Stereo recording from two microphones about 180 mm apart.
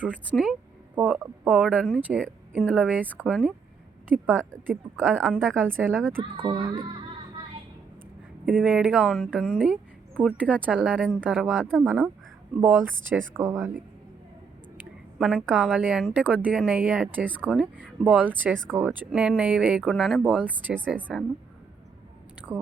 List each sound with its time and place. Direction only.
0.9 s speech: 5° right (ahead or behind)
6.3 s speech: 25° right (ahead or behind)
8.4 s speech: 5° right (ahead or behind)
15.2 s speech: 5° right (ahead or behind)